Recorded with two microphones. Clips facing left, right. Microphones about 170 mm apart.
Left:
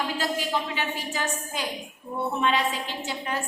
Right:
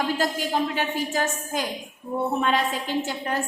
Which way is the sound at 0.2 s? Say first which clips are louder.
Right 3 dB; 45° right (ahead or behind).